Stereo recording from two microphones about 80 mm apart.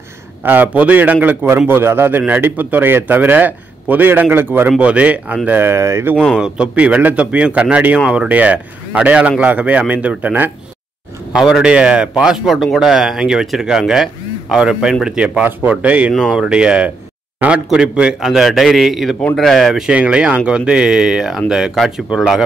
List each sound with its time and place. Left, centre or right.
0.4 s a man's voice: right
4.6 s a man's voice: centre
5.6 s speech: right
6.2 s a man's voice: centre
8.3 s a man's voice: centre
11.3 s a man's voice: centre
19.9 s a man's voice: centre